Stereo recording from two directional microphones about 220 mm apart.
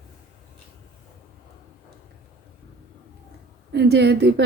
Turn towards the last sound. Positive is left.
turn(degrees=-50)  # may be behind; listen again after turning